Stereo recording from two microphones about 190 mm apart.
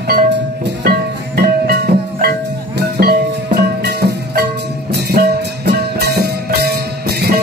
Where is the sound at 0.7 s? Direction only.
55° right (ahead or behind).